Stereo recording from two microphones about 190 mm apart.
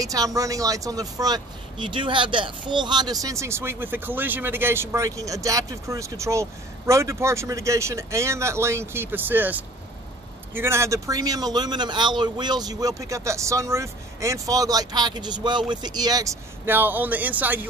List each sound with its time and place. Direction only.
0.0 s speech: 20° right (ahead or behind)